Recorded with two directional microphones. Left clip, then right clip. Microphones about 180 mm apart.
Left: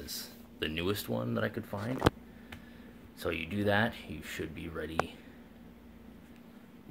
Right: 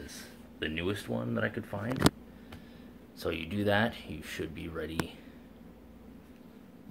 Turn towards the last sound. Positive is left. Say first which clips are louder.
# right 1 dB
turn(degrees=5)  # may be behind; listen again after turning